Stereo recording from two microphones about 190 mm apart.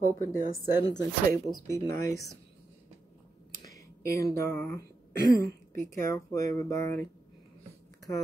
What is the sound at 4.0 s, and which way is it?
Speech, 15° left (ahead or behind).